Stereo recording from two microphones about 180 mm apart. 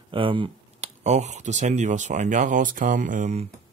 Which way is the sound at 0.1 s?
30° right (ahead or behind).